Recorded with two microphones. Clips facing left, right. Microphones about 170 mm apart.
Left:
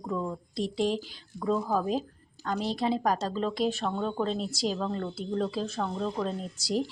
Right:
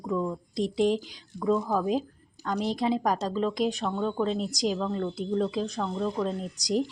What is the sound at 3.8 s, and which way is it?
Speech, 5° left (ahead or behind).